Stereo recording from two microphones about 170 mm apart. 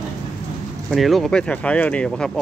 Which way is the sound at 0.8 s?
Centre (ahead or behind).